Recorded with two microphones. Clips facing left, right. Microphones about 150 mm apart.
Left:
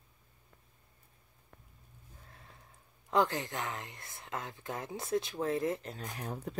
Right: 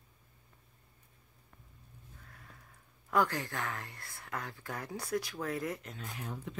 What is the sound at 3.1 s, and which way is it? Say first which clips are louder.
Speech: left 1 dB; 20° left (ahead or behind).